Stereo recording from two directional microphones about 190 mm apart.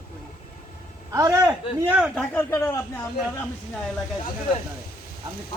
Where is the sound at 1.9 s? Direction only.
5° right (ahead or behind).